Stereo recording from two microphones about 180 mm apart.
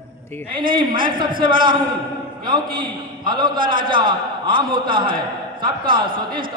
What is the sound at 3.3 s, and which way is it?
A man's voice, 25° right (ahead or behind).